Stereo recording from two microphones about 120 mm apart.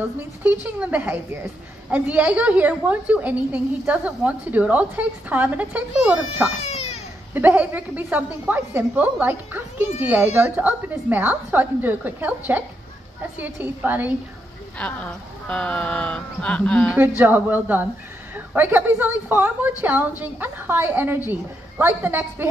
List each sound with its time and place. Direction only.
0.4 s a woman's voice: 15° right (ahead or behind)
6.6 s baby cry: 65° left (ahead or behind)
7.3 s a woman's voice: 15° right (ahead or behind)
14.8 s speech: 10° left (ahead or behind)
17.2 s a woman's voice: 15° right (ahead or behind)